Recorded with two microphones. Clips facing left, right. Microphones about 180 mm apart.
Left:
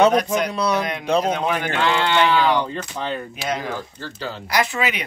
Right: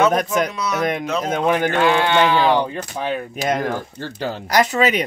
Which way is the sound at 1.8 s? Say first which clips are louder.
Right 1 dB; 15° right (ahead or behind).